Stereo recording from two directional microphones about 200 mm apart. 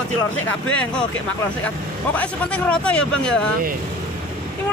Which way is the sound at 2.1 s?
5° left (ahead or behind).